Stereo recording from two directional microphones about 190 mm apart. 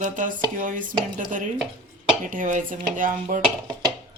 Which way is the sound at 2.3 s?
45° right (ahead or behind).